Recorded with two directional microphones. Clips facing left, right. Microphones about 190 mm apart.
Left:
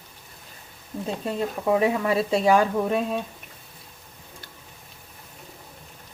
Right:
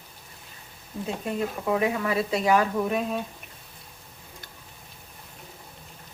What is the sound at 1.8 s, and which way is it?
Speech, 30° left (ahead or behind).